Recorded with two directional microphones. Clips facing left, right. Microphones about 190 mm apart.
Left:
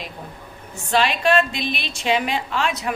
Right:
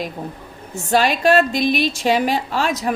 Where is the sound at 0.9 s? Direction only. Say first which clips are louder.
Right 3 dB; 40° right (ahead or behind).